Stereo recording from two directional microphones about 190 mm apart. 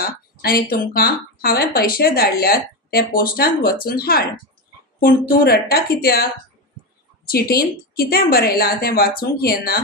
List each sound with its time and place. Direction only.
0.0 s speech: 50° left (ahead or behind)
7.2 s speech: 55° left (ahead or behind)